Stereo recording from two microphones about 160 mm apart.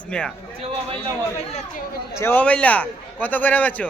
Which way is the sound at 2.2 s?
10° left (ahead or behind).